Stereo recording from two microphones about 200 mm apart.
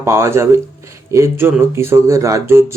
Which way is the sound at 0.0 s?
15° right (ahead or behind).